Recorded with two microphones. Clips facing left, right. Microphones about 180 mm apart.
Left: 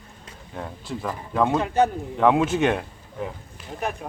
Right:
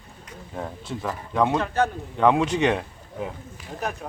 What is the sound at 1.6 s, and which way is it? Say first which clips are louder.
Speech: left 3 dB; 15° left (ahead or behind).